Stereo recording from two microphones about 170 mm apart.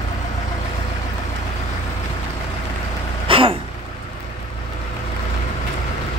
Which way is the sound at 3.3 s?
30° right (ahead or behind).